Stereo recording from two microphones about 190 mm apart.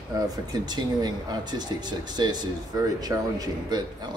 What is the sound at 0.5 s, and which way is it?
Speech, 20° right (ahead or behind).